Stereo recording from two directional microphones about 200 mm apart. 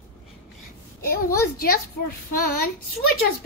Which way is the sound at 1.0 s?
50° left (ahead or behind).